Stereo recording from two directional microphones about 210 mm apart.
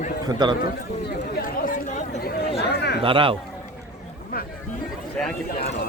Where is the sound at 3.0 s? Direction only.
25° right (ahead or behind).